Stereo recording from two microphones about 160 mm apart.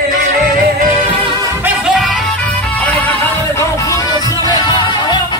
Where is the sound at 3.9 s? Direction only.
25° left (ahead or behind).